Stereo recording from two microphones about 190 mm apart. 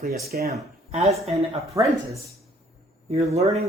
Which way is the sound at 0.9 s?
35° right (ahead or behind).